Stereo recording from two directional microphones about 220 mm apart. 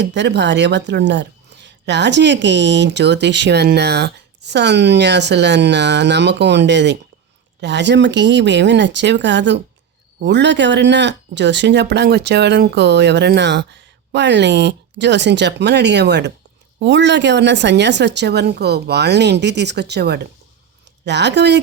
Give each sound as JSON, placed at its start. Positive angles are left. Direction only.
{"t": 0.0, "sound": "speech", "side_deg": -50}